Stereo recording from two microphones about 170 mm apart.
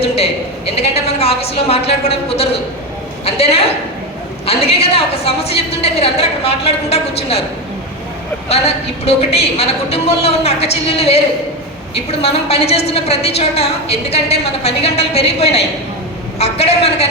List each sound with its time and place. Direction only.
0.8 s a woman's voice: 35° left (ahead or behind)
8.4 s a woman's voice: 35° left (ahead or behind)